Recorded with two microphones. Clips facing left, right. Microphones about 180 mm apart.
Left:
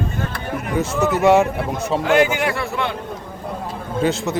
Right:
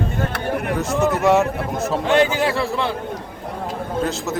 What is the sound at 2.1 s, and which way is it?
Speech, 30° right (ahead or behind).